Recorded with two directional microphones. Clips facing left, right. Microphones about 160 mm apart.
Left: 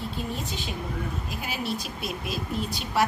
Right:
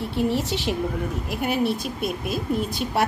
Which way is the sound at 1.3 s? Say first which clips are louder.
Right 10 dB; 60° right (ahead or behind).